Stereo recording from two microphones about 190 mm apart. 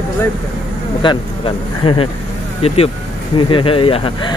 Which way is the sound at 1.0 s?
25° left (ahead or behind).